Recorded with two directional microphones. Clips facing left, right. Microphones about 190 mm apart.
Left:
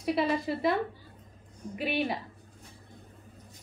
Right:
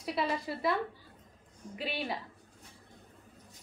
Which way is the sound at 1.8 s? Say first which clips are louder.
Left 6 dB; 20° left (ahead or behind).